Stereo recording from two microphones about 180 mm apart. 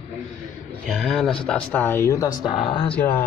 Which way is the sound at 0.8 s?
Centre (ahead or behind).